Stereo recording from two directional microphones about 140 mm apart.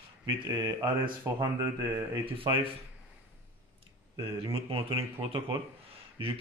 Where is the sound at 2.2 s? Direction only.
40° right (ahead or behind).